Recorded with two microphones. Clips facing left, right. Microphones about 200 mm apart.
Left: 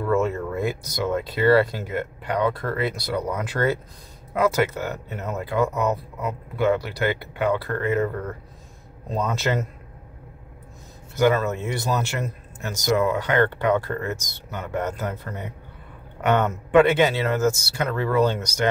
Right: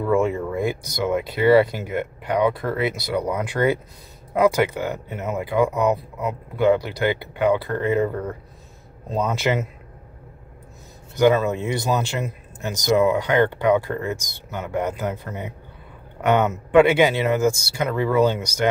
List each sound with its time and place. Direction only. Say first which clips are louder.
0.1 s speech: right 2 dB; 15° right (ahead or behind)
9.3 s speech: right 2 dB; 15° right (ahead or behind)
11.1 s speech: right 3 dB; 15° right (ahead or behind)